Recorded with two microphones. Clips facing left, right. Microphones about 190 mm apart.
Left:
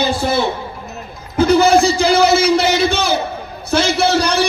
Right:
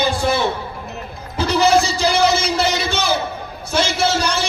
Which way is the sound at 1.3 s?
55° left (ahead or behind).